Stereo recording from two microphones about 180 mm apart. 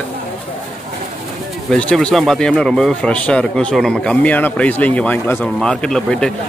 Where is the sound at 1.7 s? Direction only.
5° left (ahead or behind).